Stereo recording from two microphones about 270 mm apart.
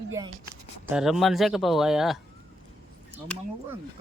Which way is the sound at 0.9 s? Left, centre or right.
Centre.